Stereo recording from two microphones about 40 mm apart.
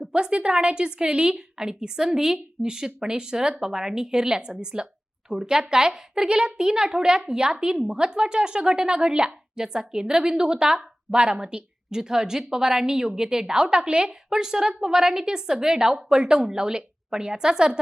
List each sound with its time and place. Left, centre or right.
0.1 s a woman's voice: right